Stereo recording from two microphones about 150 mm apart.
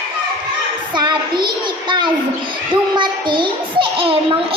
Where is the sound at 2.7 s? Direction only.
30° right (ahead or behind).